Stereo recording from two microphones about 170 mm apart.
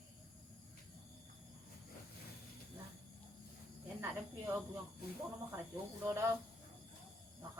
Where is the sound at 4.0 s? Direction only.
15° right (ahead or behind).